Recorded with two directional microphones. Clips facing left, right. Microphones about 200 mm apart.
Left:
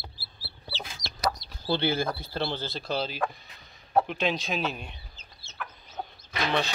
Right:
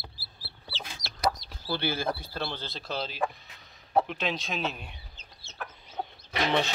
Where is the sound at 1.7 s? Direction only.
20° left (ahead or behind).